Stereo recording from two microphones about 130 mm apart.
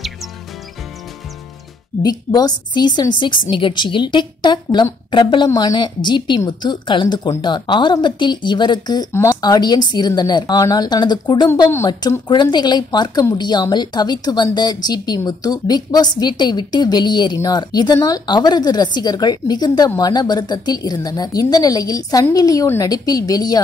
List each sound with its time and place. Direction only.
2.0 s speech: 30° left (ahead or behind)